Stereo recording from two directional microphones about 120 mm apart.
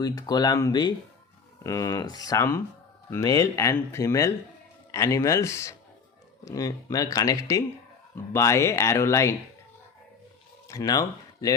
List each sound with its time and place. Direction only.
0.0 s speech: 35° left (ahead or behind)
10.7 s speech: 30° left (ahead or behind)